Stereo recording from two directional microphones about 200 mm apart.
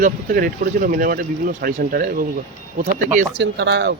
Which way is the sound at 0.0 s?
45° right (ahead or behind).